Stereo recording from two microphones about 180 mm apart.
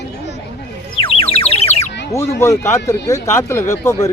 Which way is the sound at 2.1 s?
15° left (ahead or behind).